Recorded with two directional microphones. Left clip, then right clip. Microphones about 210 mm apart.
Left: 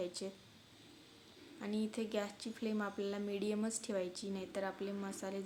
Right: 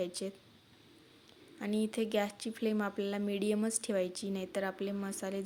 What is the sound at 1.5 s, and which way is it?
A woman's voice, 35° right (ahead or behind).